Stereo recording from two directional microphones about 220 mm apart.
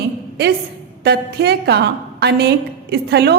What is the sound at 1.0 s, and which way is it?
A woman's voice, 50° right (ahead or behind).